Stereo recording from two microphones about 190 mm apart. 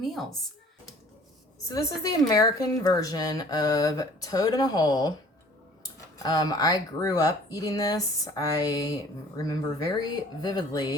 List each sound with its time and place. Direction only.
0.0 s speech: centre (ahead or behind)
1.6 s speech: 20° left (ahead or behind)